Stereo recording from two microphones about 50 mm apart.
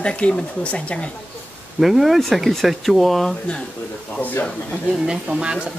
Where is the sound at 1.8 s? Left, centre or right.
Centre.